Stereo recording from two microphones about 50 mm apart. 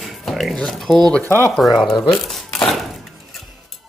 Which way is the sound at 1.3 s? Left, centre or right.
Left.